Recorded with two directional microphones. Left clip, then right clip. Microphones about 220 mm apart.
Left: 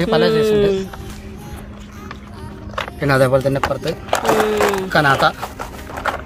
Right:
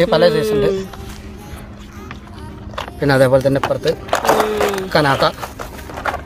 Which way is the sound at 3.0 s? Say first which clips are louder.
Right 2 dB; 25° right (ahead or behind).